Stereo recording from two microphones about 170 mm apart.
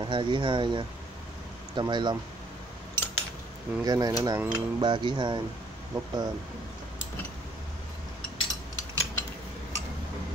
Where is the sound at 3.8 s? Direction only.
20° right (ahead or behind).